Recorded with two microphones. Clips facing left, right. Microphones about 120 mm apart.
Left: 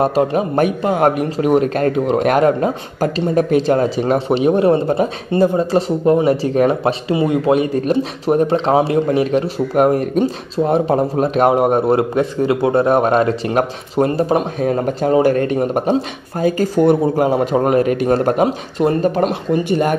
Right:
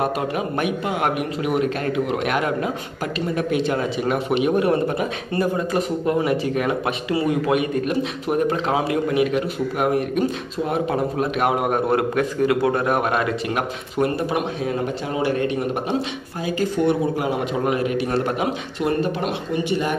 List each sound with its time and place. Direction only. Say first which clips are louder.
0.0 s speech: left 7 dB; 30° left (ahead or behind)
14.6 s speech: left 7 dB; 45° left (ahead or behind)